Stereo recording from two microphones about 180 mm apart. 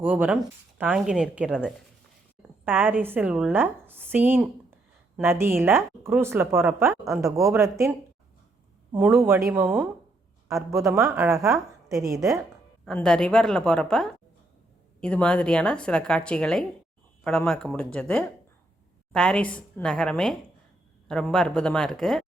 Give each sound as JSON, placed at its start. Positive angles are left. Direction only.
{"t": 0.0, "sound": "a woman's voice", "side_deg": -10}
{"t": 12.8, "sound": "a woman's voice", "side_deg": 5}